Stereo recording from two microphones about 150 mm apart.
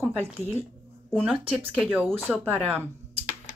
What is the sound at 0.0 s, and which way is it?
Speech, 15° right (ahead or behind).